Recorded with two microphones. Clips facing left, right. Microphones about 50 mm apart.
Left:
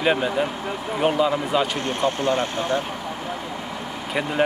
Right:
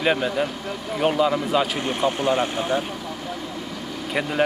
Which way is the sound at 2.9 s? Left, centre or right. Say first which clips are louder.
Left 2 dB; left.